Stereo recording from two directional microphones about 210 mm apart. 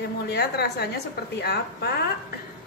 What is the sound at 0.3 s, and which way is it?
A woman's voice, 50° left (ahead or behind).